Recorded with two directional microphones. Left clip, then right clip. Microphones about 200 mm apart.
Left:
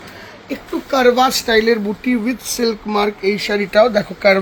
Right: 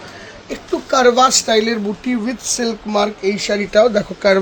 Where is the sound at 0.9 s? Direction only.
40° right (ahead or behind).